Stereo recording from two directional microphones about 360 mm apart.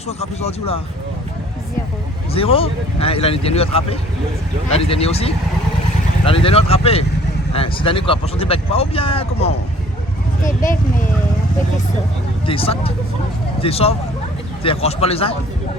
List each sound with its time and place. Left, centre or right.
0.2 s speech: centre
2.3 s speech: centre
12.5 s speech: centre